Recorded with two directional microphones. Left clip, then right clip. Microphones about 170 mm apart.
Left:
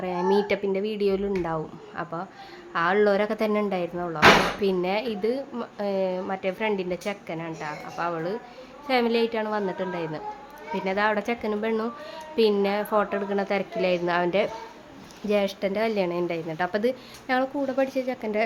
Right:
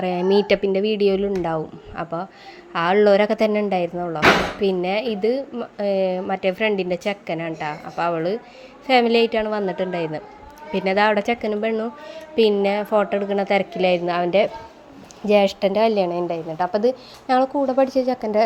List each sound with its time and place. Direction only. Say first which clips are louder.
0.0 s a woman's voice: right 5 dB; 25° right (ahead or behind); by 16.6 s 5° right (ahead or behind)
17.2 s a woman's voice: right 7 dB; 20° right (ahead or behind)